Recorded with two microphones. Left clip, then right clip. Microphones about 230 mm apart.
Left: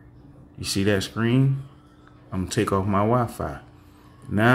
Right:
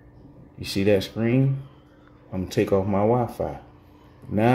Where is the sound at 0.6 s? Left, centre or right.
Centre.